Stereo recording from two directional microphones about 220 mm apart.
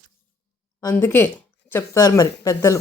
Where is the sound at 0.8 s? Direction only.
10° left (ahead or behind).